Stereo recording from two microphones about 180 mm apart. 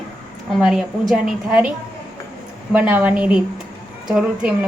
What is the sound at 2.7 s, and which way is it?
A woman's voice, 10° right (ahead or behind).